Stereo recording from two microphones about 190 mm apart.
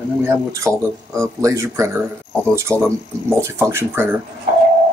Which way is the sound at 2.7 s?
5° left (ahead or behind).